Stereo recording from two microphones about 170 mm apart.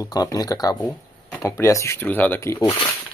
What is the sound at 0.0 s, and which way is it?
Speech, 20° left (ahead or behind).